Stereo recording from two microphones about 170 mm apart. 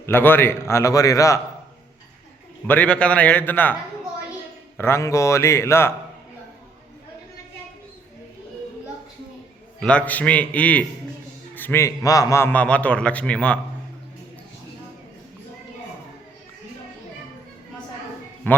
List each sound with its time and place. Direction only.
0.0 s a man's voice: 10° left (ahead or behind)
2.6 s a man's voice: 10° left (ahead or behind)
4.8 s a man's voice: 15° left (ahead or behind)
9.8 s a man's voice: 10° left (ahead or behind)
18.5 s speech: 10° left (ahead or behind)